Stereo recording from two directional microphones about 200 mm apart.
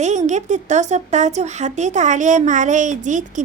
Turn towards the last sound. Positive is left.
turn(degrees=-40)  # may be behind; listen again after turning